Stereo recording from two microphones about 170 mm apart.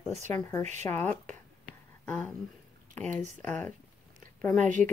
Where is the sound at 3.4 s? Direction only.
10° left (ahead or behind).